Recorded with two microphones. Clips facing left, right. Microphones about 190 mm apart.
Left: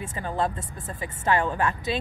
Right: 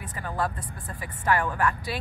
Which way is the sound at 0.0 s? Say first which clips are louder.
Left 3 dB; 25° left (ahead or behind).